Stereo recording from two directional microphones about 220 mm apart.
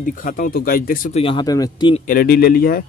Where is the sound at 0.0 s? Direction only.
35° left (ahead or behind).